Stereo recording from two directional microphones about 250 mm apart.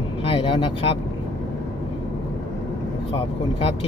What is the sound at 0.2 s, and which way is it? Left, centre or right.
Vehicle, left.